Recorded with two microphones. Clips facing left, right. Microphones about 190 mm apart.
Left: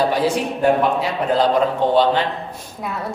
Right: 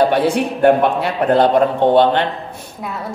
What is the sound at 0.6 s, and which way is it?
A man's voice, 60° right (ahead or behind).